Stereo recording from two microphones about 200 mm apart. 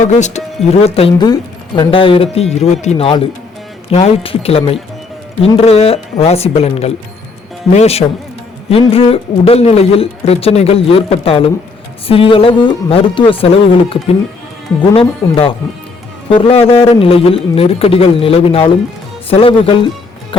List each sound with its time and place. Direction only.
0.1 s speech: 35° left (ahead or behind)